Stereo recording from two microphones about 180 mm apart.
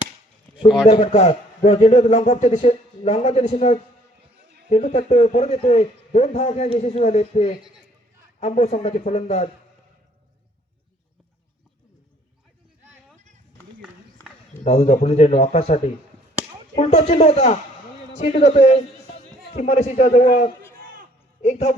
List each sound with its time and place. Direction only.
0.6 s a man's voice: 30° left (ahead or behind)
14.6 s a man's voice: 40° left (ahead or behind)